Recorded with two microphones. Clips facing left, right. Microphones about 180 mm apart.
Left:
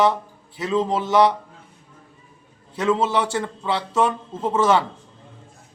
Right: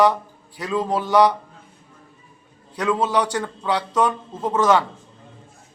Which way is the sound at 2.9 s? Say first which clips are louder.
Right 2 dB; 5° left (ahead or behind).